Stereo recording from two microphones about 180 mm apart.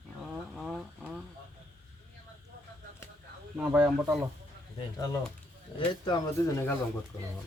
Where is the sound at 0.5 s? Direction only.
Centre (ahead or behind).